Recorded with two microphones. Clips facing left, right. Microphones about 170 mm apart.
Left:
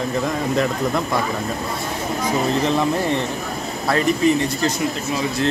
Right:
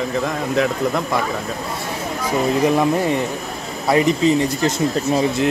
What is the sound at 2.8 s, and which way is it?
Speech, 15° right (ahead or behind).